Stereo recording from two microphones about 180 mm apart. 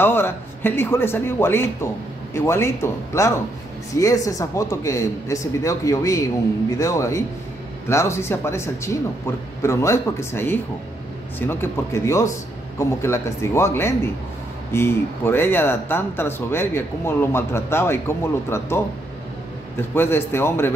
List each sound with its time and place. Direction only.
0.0 s speech: 10° left (ahead or behind)
19.9 s speech: 10° left (ahead or behind)